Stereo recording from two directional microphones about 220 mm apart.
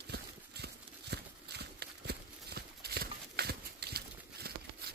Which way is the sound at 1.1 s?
50° right (ahead or behind).